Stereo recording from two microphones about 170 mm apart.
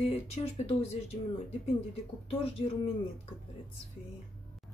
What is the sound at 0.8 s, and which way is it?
Speech, 40° left (ahead or behind).